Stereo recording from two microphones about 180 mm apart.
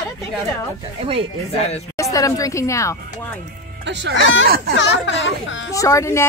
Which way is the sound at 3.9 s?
75° right (ahead or behind).